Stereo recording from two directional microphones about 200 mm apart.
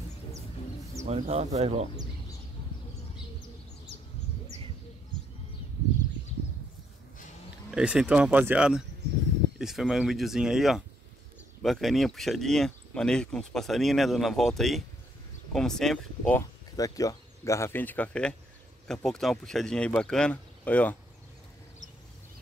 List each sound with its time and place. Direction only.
1.0 s speech: 30° right (ahead or behind)
7.7 s speech: 5° right (ahead or behind)
16.7 s speech: 15° left (ahead or behind)